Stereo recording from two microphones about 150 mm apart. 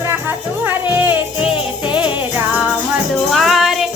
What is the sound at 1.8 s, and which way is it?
Music, 35° left (ahead or behind).